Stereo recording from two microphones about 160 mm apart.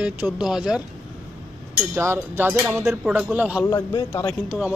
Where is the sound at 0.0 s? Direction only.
5° right (ahead or behind).